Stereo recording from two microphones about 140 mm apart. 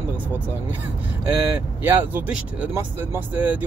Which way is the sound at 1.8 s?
10° right (ahead or behind).